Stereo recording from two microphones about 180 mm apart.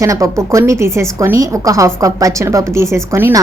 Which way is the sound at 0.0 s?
15° right (ahead or behind).